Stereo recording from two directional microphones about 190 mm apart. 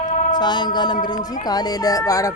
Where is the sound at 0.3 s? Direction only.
25° left (ahead or behind).